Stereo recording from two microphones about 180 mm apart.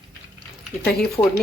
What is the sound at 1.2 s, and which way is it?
Speech, 20° left (ahead or behind).